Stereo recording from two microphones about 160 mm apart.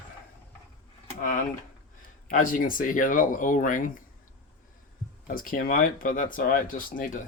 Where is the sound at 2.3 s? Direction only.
55° left (ahead or behind).